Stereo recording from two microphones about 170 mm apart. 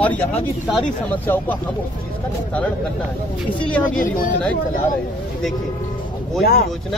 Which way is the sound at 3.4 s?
5° left (ahead or behind).